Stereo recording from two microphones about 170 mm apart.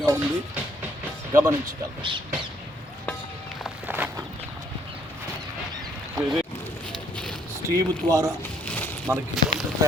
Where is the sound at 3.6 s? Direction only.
10° right (ahead or behind).